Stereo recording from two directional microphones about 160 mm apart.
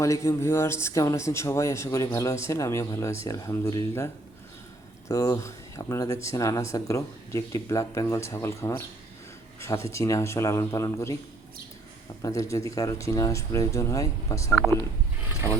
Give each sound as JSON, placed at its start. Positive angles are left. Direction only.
{"t": 0.0, "sound": "a man's voice", "side_deg": 20}
{"t": 12.2, "sound": "speech", "side_deg": 20}